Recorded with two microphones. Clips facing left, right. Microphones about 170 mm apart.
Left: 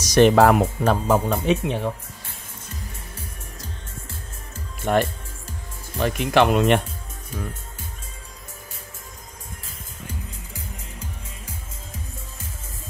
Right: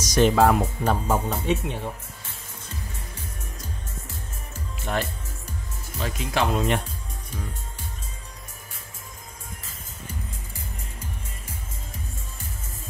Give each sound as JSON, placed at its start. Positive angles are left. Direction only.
{"t": 0.0, "sound": "speech", "side_deg": 70}
{"t": 4.9, "sound": "speech", "side_deg": 60}